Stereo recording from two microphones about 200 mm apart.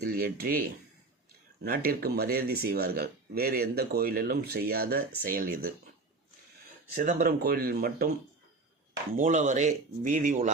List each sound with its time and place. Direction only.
0.0 s speech: 50° right (ahead or behind)
1.6 s speech: 45° right (ahead or behind)
6.9 s speech: 40° right (ahead or behind)
9.1 s speech: 40° right (ahead or behind)